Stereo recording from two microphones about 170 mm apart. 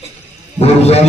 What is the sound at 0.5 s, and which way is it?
Speech, 35° left (ahead or behind).